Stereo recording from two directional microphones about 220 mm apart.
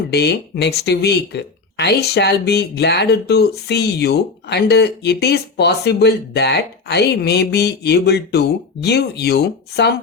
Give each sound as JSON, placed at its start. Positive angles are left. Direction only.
{"t": 0.1, "sound": "speech", "side_deg": 50}